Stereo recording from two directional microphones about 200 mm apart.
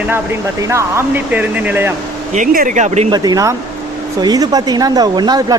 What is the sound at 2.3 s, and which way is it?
Speech, 40° right (ahead or behind).